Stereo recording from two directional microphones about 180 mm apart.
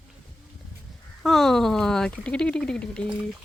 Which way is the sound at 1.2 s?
Centre (ahead or behind).